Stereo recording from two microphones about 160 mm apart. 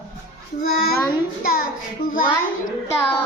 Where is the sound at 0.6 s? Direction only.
70° left (ahead or behind).